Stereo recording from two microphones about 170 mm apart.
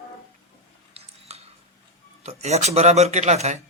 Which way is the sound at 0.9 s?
40° right (ahead or behind).